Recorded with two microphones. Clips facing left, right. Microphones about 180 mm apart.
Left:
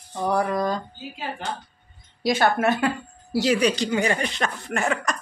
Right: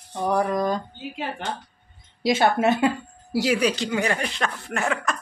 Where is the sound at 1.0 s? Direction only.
70° right (ahead or behind).